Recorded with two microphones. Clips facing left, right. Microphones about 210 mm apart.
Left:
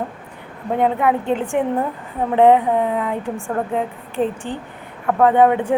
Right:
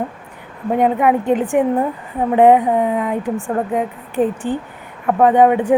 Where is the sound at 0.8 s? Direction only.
15° right (ahead or behind).